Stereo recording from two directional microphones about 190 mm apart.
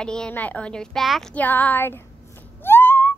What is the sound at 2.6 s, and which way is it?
Whistling, 10° left (ahead or behind).